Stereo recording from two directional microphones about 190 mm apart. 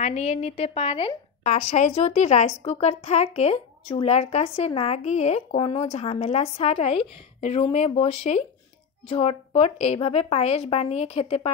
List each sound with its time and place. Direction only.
0.0 s a woman's voice: 35° left (ahead or behind)